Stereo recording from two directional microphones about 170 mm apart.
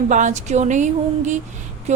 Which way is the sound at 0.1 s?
45° right (ahead or behind).